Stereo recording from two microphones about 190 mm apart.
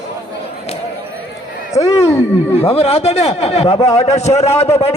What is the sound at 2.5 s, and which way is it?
A man's voice, 30° left (ahead or behind).